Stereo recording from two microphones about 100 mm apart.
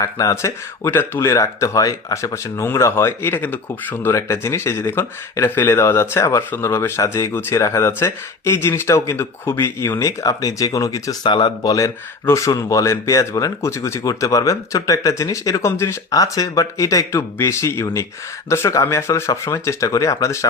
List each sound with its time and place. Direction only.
0.0 s speech: 35° left (ahead or behind)
0.9 s speech: 25° left (ahead or behind)
11.3 s speech: 50° left (ahead or behind)
12.2 s speech: 30° left (ahead or behind)